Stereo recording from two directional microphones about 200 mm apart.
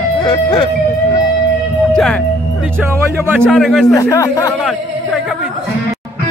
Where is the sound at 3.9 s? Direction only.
15° left (ahead or behind).